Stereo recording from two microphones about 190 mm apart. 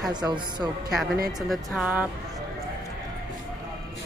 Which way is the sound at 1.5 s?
Centre (ahead or behind).